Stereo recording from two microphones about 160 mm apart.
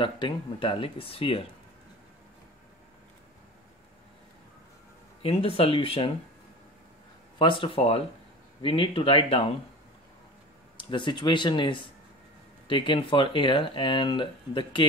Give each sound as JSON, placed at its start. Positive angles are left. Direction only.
{"t": 0.0, "sound": "speech", "side_deg": 30}
{"t": 5.2, "sound": "speech", "side_deg": 35}
{"t": 7.3, "sound": "speech", "side_deg": 30}
{"t": 10.8, "sound": "speech", "side_deg": 30}